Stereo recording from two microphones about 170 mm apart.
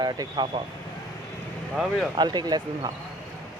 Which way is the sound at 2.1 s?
25° right (ahead or behind).